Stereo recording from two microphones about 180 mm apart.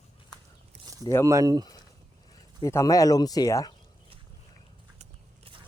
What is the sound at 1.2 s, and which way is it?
Speech, 20° right (ahead or behind).